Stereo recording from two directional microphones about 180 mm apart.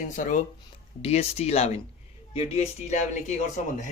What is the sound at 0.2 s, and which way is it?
Speech, 45° left (ahead or behind).